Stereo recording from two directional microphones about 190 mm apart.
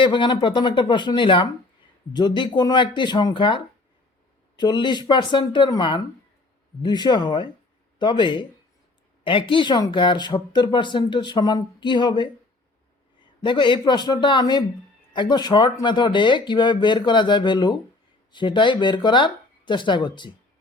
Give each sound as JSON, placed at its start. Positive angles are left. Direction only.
{"t": 0.0, "sound": "speech", "side_deg": 25}
{"t": 13.4, "sound": "speech", "side_deg": 25}